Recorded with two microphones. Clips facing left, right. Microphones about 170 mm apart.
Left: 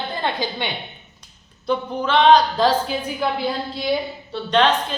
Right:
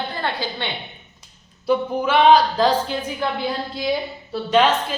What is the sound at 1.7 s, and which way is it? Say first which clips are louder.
A woman's voice: right 2 dB; 10° right (ahead or behind).